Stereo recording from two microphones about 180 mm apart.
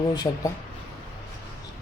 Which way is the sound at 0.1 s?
20° left (ahead or behind).